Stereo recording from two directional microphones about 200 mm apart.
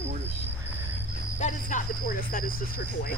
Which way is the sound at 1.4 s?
40° left (ahead or behind).